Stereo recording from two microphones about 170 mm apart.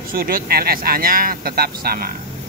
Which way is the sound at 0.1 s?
60° right (ahead or behind).